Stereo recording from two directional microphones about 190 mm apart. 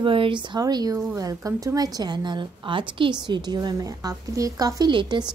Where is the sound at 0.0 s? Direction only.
25° right (ahead or behind).